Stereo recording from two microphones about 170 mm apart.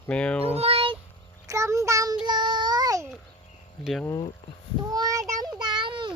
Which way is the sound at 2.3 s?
25° right (ahead or behind).